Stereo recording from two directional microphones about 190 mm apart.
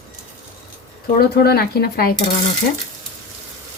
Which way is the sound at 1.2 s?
55° left (ahead or behind).